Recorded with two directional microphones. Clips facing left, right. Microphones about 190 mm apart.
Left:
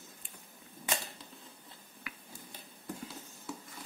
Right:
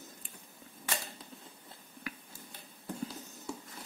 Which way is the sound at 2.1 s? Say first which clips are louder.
Right 6 dB; 40° right (ahead or behind).